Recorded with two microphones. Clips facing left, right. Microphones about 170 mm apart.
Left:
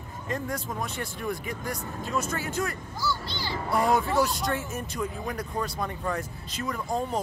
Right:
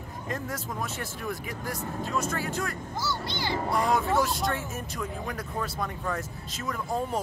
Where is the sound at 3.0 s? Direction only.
20° right (ahead or behind).